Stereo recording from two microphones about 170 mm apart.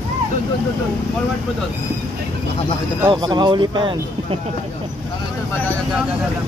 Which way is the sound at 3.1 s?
25° right (ahead or behind).